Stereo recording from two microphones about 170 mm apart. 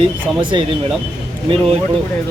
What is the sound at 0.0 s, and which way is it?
Speech, 30° right (ahead or behind).